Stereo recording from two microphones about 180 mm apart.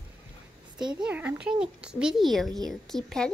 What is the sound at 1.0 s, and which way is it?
A child's voice, 5° right (ahead or behind).